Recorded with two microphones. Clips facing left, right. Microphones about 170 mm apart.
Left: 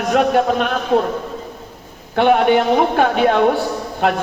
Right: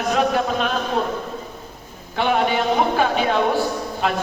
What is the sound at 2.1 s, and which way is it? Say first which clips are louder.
A man's voice: left 7 dB; 55° left (ahead or behind).